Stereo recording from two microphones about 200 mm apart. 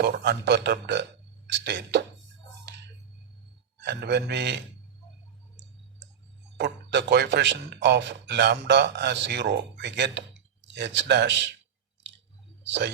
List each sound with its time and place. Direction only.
0.0 s speech: 50° right (ahead or behind)
3.8 s speech: 60° right (ahead or behind)
6.6 s speech: 60° right (ahead or behind)
12.6 s speech: 60° right (ahead or behind)